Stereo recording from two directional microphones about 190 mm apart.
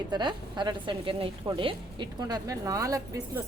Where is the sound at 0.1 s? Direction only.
25° right (ahead or behind).